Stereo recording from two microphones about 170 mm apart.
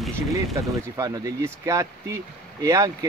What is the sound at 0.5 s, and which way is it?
Speech, 20° right (ahead or behind).